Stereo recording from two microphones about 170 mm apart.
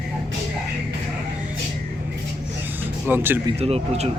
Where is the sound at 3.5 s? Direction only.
35° right (ahead or behind).